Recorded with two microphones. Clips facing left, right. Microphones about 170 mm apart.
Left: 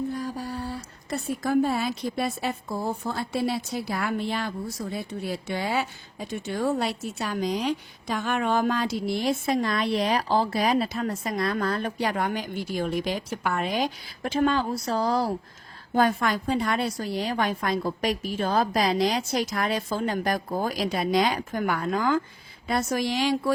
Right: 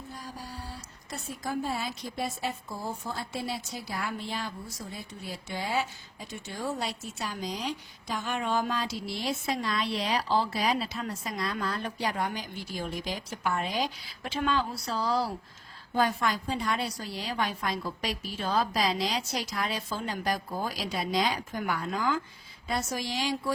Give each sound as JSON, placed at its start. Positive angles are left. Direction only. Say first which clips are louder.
{"t": 0.2, "sound": "a woman's voice", "louder": "left 10 dB", "side_deg": 60}